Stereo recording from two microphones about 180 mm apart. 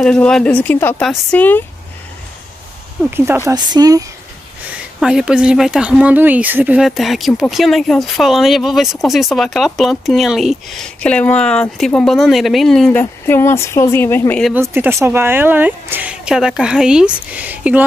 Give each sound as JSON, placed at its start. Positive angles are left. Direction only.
{"t": 0.0, "sound": "speech", "side_deg": 5}
{"t": 3.1, "sound": "speech", "side_deg": -15}
{"t": 5.0, "sound": "speech", "side_deg": -5}
{"t": 13.0, "sound": "speech", "side_deg": 15}
{"t": 14.5, "sound": "speech", "side_deg": -10}